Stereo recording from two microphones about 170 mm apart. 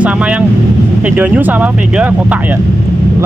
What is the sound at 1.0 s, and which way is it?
Speech, 10° right (ahead or behind).